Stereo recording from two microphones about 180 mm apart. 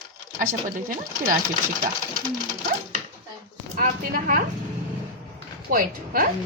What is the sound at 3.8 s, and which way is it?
Speech, 45° right (ahead or behind).